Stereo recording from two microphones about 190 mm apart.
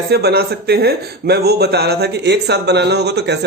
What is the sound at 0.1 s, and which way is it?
Speech, 55° right (ahead or behind).